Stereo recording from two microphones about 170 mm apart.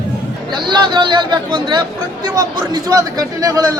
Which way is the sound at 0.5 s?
25° right (ahead or behind).